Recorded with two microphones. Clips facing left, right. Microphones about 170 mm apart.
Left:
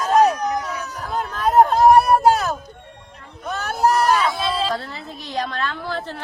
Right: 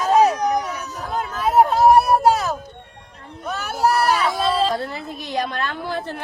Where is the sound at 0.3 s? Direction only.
20° right (ahead or behind).